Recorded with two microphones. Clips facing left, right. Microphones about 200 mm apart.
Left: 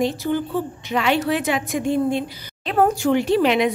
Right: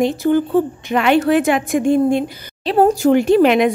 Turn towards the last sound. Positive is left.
turn(degrees=-50)  # may be behind; listen again after turning